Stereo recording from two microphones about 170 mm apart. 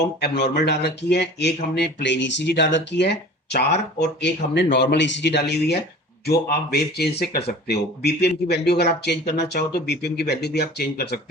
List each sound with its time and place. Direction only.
0.2 s speech: 80° left
4.0 s speech: 90° left; by 11.2 s 75° left (ahead or behind)